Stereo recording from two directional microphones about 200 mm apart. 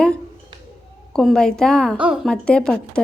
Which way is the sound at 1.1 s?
Centre (ahead or behind).